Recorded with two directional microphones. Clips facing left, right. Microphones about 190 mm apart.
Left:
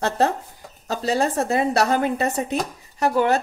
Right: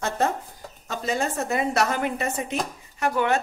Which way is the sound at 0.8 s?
35° left (ahead or behind).